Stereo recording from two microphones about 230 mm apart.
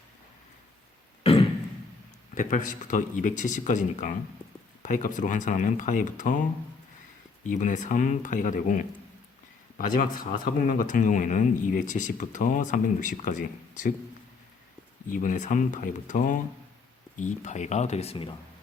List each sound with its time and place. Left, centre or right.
1.2 s a sound: left
2.3 s speech: left
7.4 s speech: left
15.1 s speech: left